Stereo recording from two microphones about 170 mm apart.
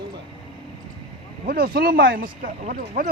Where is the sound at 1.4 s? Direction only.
60° right (ahead or behind).